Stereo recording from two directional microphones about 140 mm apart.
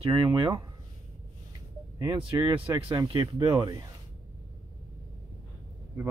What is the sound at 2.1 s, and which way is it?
Speech, 40° right (ahead or behind).